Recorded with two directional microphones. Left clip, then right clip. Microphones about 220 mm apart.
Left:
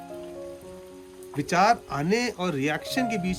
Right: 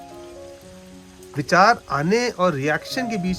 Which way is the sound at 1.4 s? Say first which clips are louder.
Right 6 dB; 5° right (ahead or behind).